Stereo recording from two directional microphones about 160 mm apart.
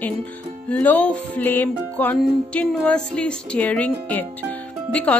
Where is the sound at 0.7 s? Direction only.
10° left (ahead or behind).